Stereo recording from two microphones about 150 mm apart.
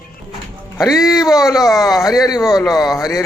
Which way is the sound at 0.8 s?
Centre (ahead or behind).